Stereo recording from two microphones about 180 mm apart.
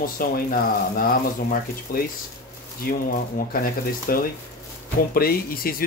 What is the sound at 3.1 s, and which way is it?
Speech, 50° left (ahead or behind).